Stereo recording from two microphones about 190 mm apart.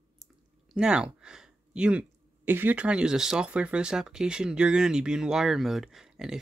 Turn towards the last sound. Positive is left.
turn(degrees=-5)  # may be behind; listen again after turning